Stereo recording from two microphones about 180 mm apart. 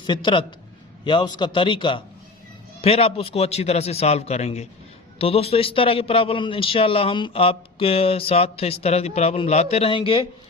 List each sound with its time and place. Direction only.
0.0 s a man's voice: 25° left (ahead or behind)